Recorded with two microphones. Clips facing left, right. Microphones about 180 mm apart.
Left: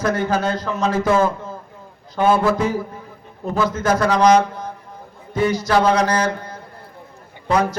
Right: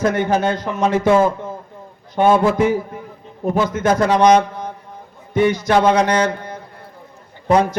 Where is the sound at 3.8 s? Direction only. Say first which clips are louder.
Right 2 dB; 25° right (ahead or behind).